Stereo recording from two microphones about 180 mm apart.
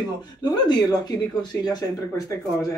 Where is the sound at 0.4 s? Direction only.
25° left (ahead or behind).